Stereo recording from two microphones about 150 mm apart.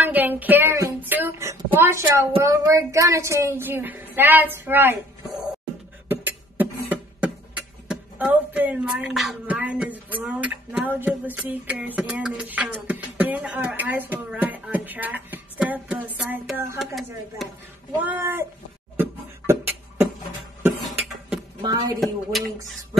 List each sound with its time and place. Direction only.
0.0 s child singing: 10° right (ahead or behind)
2.4 s a woman's voice: 20° right (ahead or behind)
6.0 s beatboxing: 10° right (ahead or behind)
16.7 s speech: centre (ahead or behind)
18.0 s a woman's voice: 15° right (ahead or behind)
18.9 s beatboxing: 15° right (ahead or behind)
21.5 s a woman's voice: 30° right (ahead or behind)
22.3 s speech: centre (ahead or behind)